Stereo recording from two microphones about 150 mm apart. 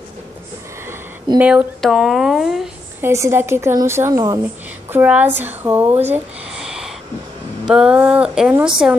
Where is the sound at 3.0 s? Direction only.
15° right (ahead or behind).